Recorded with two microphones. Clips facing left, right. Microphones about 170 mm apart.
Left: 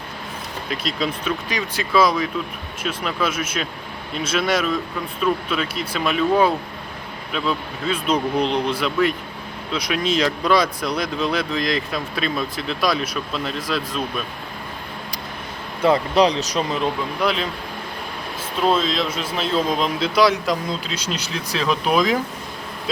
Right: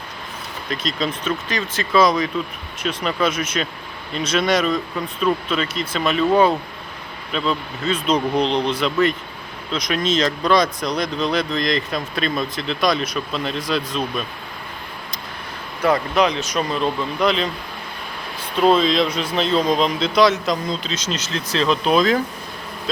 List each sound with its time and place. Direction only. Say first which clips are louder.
0.7 s speech: right 1 dB; 10° left (ahead or behind)
7.3 s speech: right 1 dB; 10° left (ahead or behind)
15.8 s speech: left 1 dB; 30° left (ahead or behind)
16.6 s speech: right 3 dB; 20° left (ahead or behind)
17.2 s speech: right 3 dB; 5° left (ahead or behind)
18.5 s speech: right 4 dB; centre (ahead or behind)